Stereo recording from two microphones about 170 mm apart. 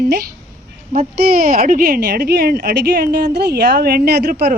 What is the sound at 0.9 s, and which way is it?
Speech, 55° right (ahead or behind).